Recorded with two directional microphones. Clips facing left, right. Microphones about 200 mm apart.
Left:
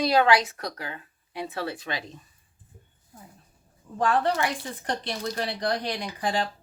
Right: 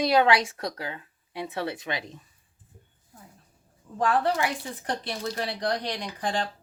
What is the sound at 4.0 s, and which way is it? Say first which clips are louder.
Speech: even; 5° right (ahead or behind).